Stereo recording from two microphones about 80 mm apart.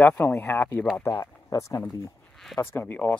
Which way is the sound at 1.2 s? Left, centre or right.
Left.